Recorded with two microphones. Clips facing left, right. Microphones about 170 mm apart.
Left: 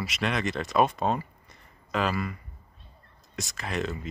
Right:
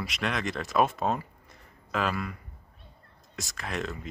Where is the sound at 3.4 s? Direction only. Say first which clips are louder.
Left 3 dB; centre (ahead or behind).